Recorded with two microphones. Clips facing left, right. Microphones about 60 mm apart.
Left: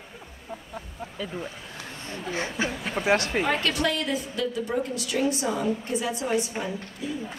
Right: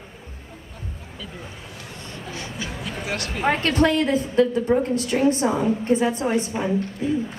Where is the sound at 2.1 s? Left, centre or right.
Left.